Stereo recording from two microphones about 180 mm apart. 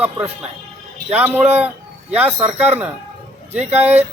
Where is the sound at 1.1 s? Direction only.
10° right (ahead or behind).